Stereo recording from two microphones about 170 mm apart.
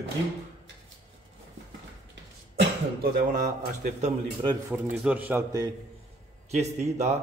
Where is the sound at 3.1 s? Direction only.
50° right (ahead or behind).